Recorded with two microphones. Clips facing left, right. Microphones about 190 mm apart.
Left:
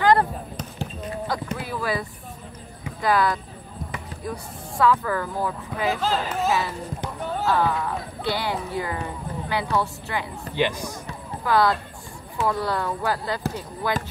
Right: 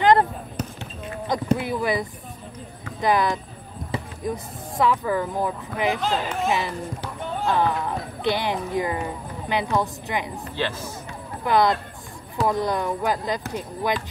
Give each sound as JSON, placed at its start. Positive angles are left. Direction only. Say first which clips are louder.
{"t": 0.0, "sound": "basketball bounce", "louder": "right 1 dB", "side_deg": -20}
{"t": 1.3, "sound": "speech", "louder": "right 9 dB", "side_deg": -20}
{"t": 5.9, "sound": "speech", "louder": "even", "side_deg": 0}
{"t": 7.4, "sound": "speech", "louder": "right 1 dB", "side_deg": -20}
{"t": 10.5, "sound": "speech", "louder": "left 5 dB", "side_deg": 15}
{"t": 11.4, "sound": "speech", "louder": "right 1 dB", "side_deg": -20}